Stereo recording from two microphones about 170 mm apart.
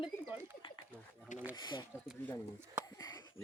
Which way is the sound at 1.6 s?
25° left (ahead or behind).